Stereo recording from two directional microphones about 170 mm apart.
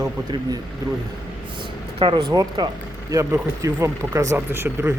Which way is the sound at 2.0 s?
30° right (ahead or behind).